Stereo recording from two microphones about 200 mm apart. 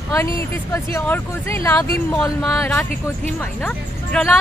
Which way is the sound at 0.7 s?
15° left (ahead or behind).